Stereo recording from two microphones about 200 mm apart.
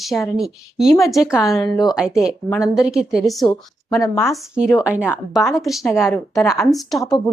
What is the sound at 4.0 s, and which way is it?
Speech, 10° left (ahead or behind).